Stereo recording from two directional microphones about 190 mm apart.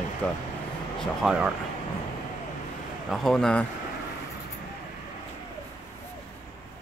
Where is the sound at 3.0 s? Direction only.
Centre (ahead or behind).